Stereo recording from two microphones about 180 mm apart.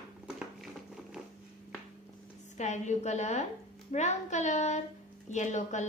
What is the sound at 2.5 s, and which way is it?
A woman's voice, 40° left (ahead or behind).